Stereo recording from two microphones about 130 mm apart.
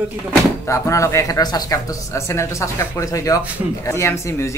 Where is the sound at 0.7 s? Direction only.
25° left (ahead or behind).